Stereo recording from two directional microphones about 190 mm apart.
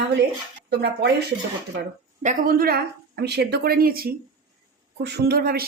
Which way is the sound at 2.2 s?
45° right (ahead or behind).